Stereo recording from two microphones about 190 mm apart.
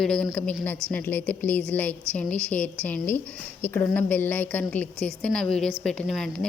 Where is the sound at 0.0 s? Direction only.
5° left (ahead or behind).